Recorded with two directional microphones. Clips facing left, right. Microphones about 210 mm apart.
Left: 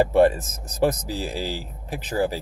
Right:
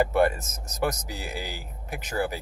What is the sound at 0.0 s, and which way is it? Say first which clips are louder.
Speech: left 5 dB; 30° left (ahead or behind).